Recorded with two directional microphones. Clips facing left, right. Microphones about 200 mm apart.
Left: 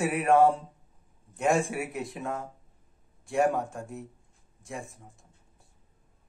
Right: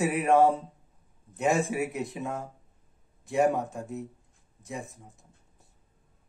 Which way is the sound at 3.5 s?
20° right (ahead or behind).